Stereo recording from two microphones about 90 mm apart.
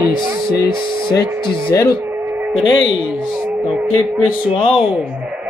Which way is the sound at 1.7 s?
35° left (ahead or behind).